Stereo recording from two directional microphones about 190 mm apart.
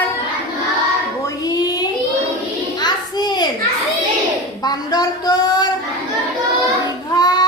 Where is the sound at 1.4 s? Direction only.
20° left (ahead or behind).